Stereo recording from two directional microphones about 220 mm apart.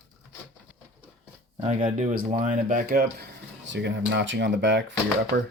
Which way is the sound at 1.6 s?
35° right (ahead or behind).